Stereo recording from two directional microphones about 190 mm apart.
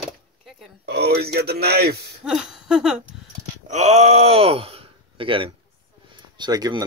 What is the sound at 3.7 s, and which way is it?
Speech, 35° right (ahead or behind).